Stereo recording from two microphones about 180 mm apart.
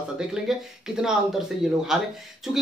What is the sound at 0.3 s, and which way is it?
Speech, 5° right (ahead or behind).